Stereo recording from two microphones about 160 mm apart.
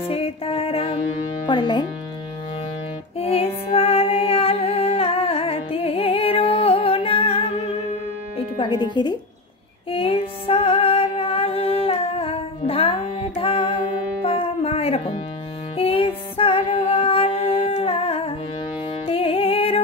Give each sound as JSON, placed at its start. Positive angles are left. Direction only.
{"t": 0.0, "sound": "music", "side_deg": 35}
{"t": 3.2, "sound": "music", "side_deg": 40}
{"t": 3.7, "sound": "humming", "side_deg": 40}
{"t": 8.5, "sound": "music", "side_deg": 30}
{"t": 17.0, "sound": "humming", "side_deg": 35}
{"t": 19.0, "sound": "music", "side_deg": 35}